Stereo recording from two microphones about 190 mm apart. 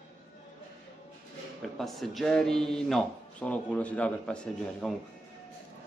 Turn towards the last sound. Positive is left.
turn(degrees=5)  # may be behind; listen again after turning